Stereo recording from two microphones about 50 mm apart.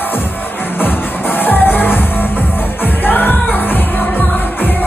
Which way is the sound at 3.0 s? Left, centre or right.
Left.